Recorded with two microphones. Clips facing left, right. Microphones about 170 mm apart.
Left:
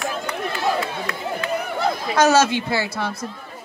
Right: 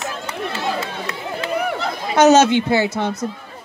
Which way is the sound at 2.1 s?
20° right (ahead or behind).